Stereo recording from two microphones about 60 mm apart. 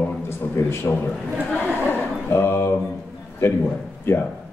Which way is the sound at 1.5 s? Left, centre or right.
Left.